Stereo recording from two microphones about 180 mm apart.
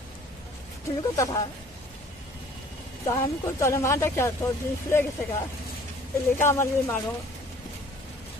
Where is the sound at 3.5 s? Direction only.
15° left (ahead or behind).